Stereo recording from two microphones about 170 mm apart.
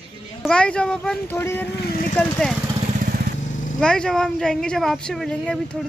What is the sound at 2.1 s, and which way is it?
Speech, 5° left (ahead or behind).